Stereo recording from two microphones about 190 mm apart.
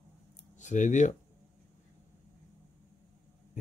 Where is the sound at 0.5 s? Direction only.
40° left (ahead or behind).